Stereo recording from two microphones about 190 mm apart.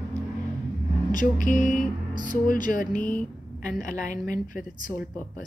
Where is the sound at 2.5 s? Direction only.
45° left (ahead or behind).